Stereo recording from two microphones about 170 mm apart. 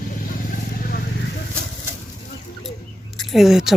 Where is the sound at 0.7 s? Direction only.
60° left (ahead or behind).